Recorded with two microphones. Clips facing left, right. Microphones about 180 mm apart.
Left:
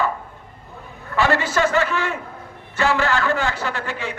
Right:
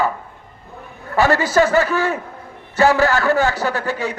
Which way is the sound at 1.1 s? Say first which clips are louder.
Right 4 dB; 40° right (ahead or behind).